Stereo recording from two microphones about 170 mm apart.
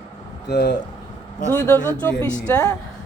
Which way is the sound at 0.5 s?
85° left.